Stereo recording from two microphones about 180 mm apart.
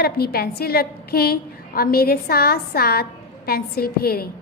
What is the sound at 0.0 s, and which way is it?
A woman's voice, 60° left (ahead or behind).